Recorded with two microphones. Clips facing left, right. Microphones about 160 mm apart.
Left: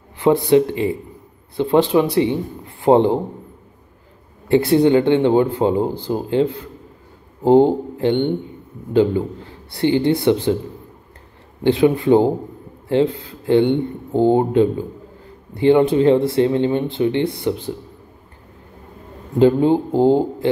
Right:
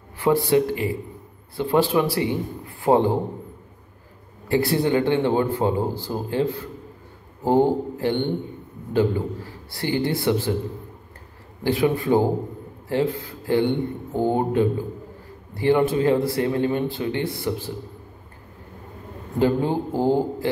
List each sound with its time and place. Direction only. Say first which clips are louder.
0.2 s speech: left 5 dB; 20° left (ahead or behind)
4.5 s a man's voice: left 7 dB; 20° left (ahead or behind)
11.6 s speech: left 6 dB; 20° left (ahead or behind)
19.3 s speech: left 7 dB; 20° left (ahead or behind)